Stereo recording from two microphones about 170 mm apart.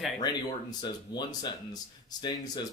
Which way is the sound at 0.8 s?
25° left (ahead or behind).